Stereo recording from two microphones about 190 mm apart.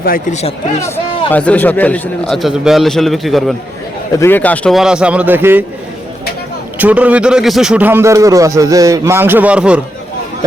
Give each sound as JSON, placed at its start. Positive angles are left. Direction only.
{"t": 0.0, "sound": "speech", "side_deg": 50}
{"t": 0.8, "sound": "a man's voice", "side_deg": 10}
{"t": 6.7, "sound": "speech", "side_deg": -10}